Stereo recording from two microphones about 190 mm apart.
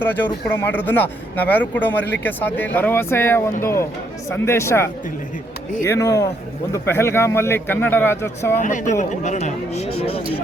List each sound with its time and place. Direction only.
0.0 s a man's voice: 10° left (ahead or behind)
8.6 s speech: 40° left (ahead or behind)